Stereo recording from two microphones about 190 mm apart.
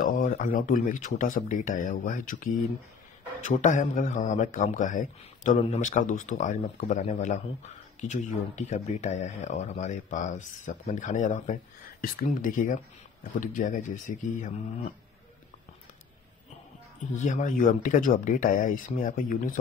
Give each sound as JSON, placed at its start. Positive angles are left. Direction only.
{"t": 0.0, "sound": "speech", "side_deg": 45}
{"t": 17.0, "sound": "speech", "side_deg": 40}